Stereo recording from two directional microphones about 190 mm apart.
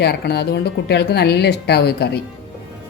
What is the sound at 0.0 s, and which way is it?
A woman's voice, 60° left (ahead or behind).